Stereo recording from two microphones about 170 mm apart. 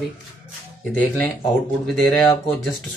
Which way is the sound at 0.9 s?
5° left (ahead or behind).